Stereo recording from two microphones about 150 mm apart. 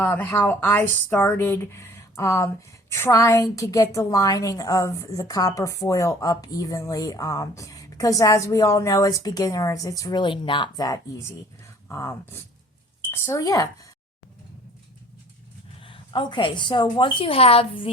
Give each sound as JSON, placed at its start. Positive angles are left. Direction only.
{"t": 0.0, "sound": "a woman's voice", "side_deg": 15}
{"t": 15.8, "sound": "a woman's voice", "side_deg": 35}